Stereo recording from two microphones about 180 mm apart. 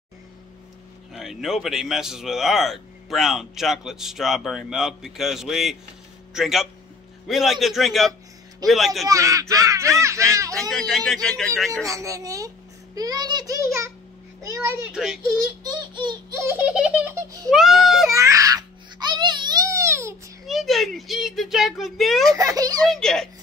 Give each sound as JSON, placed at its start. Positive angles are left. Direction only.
{"t": 1.1, "sound": "a man's voice", "side_deg": 0}
{"t": 9.1, "sound": "speech", "side_deg": -15}
{"t": 10.7, "sound": "a man's voice", "side_deg": 0}
{"t": 11.8, "sound": "a child's voice", "side_deg": -20}
{"t": 14.9, "sound": "a man's voice", "side_deg": -5}
{"t": 15.3, "sound": "baby laughter", "side_deg": -20}
{"t": 16.4, "sound": "a child's voice", "side_deg": -10}
{"t": 18.1, "sound": "baby cry", "side_deg": -15}
{"t": 20.4, "sound": "speech", "side_deg": 0}
{"t": 22.3, "sound": "a child's voice", "side_deg": -20}
{"t": 22.8, "sound": "a man's voice", "side_deg": 5}